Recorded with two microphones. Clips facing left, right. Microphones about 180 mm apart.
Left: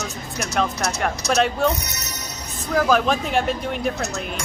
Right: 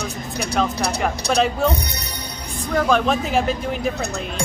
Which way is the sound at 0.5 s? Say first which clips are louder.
Right 2 dB; centre (ahead or behind).